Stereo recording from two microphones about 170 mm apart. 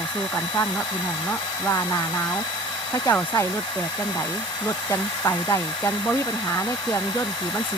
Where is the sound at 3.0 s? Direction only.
15° left (ahead or behind).